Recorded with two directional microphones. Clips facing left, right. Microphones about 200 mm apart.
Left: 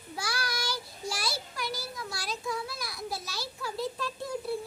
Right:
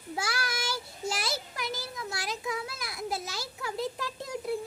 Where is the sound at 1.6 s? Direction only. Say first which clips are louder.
Even; 20° right (ahead or behind).